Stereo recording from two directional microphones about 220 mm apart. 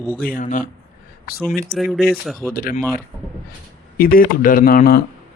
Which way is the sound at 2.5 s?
40° left (ahead or behind).